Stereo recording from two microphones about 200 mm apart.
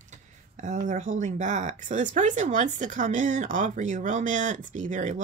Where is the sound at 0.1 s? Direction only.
35° right (ahead or behind).